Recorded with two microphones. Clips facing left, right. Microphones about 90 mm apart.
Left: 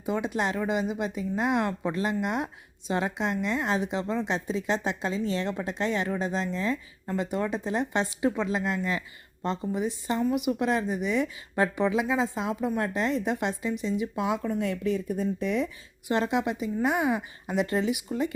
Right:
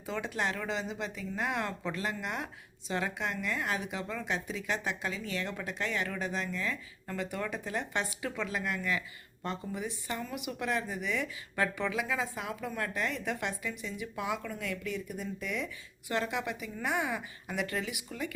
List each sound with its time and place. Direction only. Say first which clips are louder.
0.0 s a woman's voice: left 6 dB; 15° left (ahead or behind)